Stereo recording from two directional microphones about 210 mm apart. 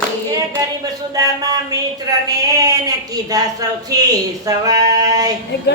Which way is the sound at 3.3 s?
15° right (ahead or behind).